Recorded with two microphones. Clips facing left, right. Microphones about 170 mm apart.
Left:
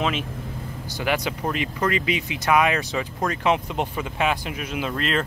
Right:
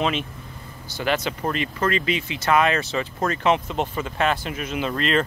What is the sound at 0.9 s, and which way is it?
Speech, 15° left (ahead or behind).